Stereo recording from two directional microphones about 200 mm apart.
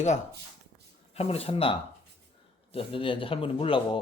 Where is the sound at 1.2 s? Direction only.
30° left (ahead or behind).